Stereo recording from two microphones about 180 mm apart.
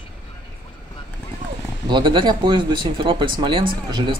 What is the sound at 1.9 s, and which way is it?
Speech, 25° right (ahead or behind).